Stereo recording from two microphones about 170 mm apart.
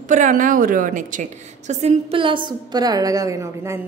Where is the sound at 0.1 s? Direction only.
50° right (ahead or behind).